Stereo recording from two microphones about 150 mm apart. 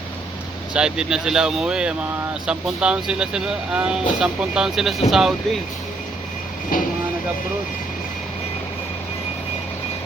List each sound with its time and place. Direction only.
0.7 s speech: 5° right (ahead or behind)
6.7 s speech: 70° left (ahead or behind)